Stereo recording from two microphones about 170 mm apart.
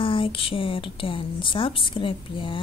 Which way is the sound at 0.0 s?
30° left (ahead or behind).